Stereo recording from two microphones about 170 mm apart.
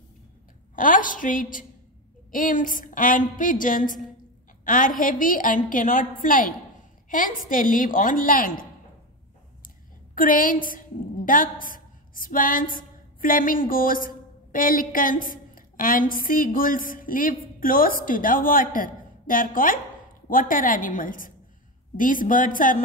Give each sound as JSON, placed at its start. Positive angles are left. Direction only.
{"t": 0.7, "sound": "a woman's voice", "side_deg": 50}
{"t": 10.1, "sound": "a woman's voice", "side_deg": 55}